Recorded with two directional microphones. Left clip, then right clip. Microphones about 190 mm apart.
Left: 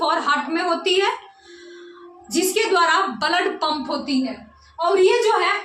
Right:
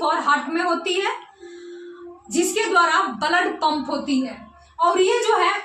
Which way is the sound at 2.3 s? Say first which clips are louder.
Even; 15° left (ahead or behind).